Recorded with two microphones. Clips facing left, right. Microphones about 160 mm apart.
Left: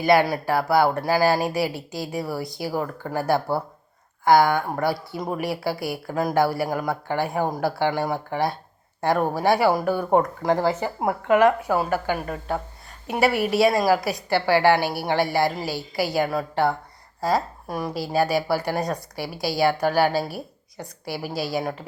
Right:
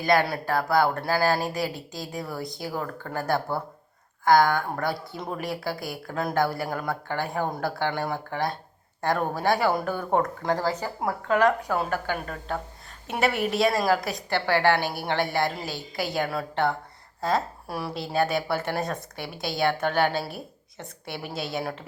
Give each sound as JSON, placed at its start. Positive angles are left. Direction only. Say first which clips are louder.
{"t": 0.4, "sound": "a woman's voice", "louder": "left 3 dB", "side_deg": 10}
{"t": 2.0, "sound": "a woman's voice", "louder": "left 5 dB", "side_deg": 5}